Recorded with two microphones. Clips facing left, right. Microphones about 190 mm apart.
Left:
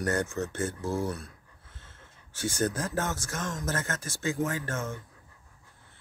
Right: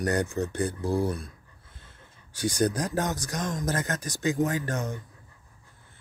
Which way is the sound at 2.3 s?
15° right (ahead or behind).